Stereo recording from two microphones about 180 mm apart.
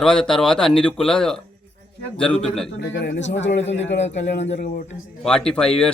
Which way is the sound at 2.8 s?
90° left.